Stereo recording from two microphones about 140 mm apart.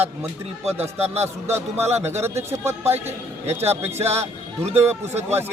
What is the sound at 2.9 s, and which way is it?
Speech, 50° right (ahead or behind).